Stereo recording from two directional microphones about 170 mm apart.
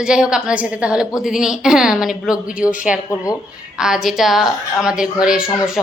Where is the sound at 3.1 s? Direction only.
20° left (ahead or behind).